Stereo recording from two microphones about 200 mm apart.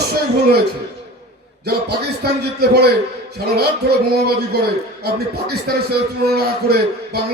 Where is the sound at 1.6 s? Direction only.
55° right (ahead or behind).